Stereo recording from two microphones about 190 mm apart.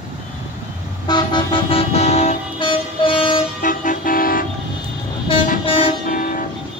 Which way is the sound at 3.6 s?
45° left (ahead or behind).